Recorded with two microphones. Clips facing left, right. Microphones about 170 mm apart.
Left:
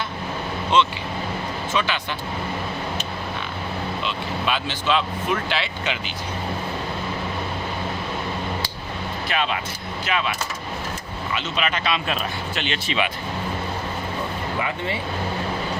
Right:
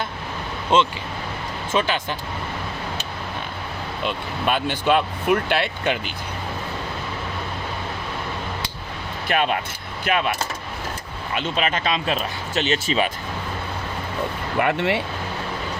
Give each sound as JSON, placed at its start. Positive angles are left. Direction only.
{"t": 0.7, "sound": "speech", "side_deg": -45}
{"t": 4.0, "sound": "speech", "side_deg": -50}
{"t": 9.3, "sound": "speech", "side_deg": -50}
{"t": 11.3, "sound": "speech", "side_deg": -45}
{"t": 14.6, "sound": "speech", "side_deg": -70}